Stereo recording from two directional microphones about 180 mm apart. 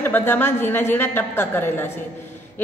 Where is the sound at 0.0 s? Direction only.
10° left (ahead or behind).